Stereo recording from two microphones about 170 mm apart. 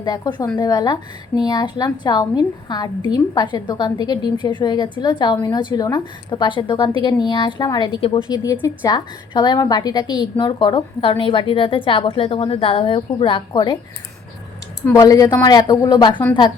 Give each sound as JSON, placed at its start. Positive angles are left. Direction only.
{"t": 0.0, "sound": "a woman's voice", "side_deg": 25}
{"t": 14.9, "sound": "a woman's voice", "side_deg": 20}